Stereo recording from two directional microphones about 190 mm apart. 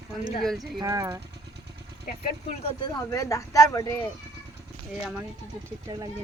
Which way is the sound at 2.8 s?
20° left (ahead or behind).